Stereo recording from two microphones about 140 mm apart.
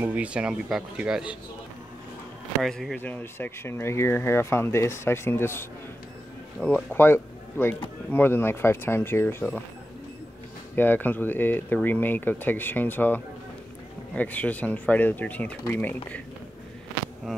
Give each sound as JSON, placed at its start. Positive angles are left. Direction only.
{"t": 0.0, "sound": "speech", "side_deg": -10}
{"t": 2.6, "sound": "speech", "side_deg": 0}
{"t": 10.8, "sound": "speech", "side_deg": 15}